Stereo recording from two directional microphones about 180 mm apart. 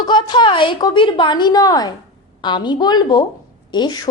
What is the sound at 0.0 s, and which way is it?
A woman's voice, 25° left (ahead or behind).